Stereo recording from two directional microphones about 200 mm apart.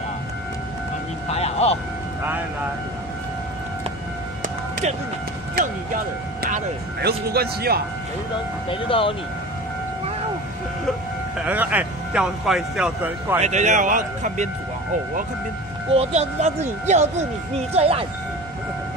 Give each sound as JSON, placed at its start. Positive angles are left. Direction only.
{"t": 1.3, "sound": "a sound", "side_deg": 30}
{"t": 4.4, "sound": "a sound", "side_deg": -40}
{"t": 6.4, "sound": "speech", "side_deg": -50}
{"t": 8.6, "sound": "speech", "side_deg": 25}
{"t": 11.3, "sound": "speech", "side_deg": -10}
{"t": 13.4, "sound": "speech", "side_deg": -35}
{"t": 15.9, "sound": "speech", "side_deg": -30}